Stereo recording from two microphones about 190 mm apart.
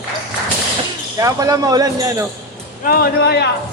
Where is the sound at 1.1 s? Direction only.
20° right (ahead or behind).